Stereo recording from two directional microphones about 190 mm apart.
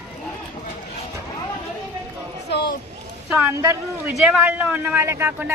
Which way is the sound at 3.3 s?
10° right (ahead or behind).